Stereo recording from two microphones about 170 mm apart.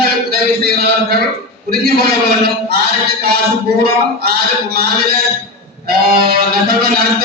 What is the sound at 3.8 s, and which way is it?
A man's voice, 65° right (ahead or behind).